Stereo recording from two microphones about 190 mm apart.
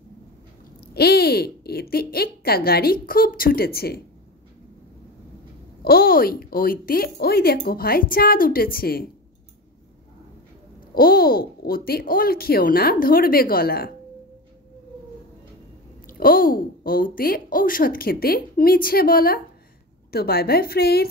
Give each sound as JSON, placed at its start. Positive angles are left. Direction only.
{"t": 0.9, "sound": "a woman's voice", "side_deg": 55}
{"t": 5.8, "sound": "a woman's voice", "side_deg": 55}
{"t": 11.0, "sound": "a woman's voice", "side_deg": 50}
{"t": 16.1, "sound": "a woman's voice", "side_deg": 50}